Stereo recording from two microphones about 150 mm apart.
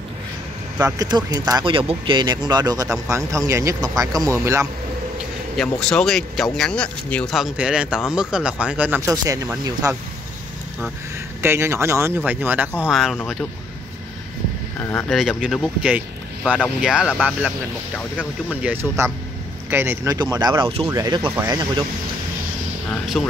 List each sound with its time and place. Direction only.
0.9 s speech: 25° right (ahead or behind)
5.6 s speech: 5° left (ahead or behind)
7.3 s speech: 5° right (ahead or behind)
9.8 s speech: 20° right (ahead or behind)
11.4 s speech: 15° right (ahead or behind)
12.9 s speech: centre (ahead or behind)
15.0 s speech: centre (ahead or behind)
20.2 s speech: 30° right (ahead or behind)
20.9 s speech: 25° right (ahead or behind)
23.2 s speech: centre (ahead or behind)